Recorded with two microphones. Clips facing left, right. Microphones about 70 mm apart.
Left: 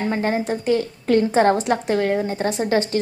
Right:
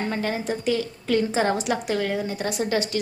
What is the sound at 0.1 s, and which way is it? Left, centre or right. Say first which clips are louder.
A woman's voice: left 5 dB; left.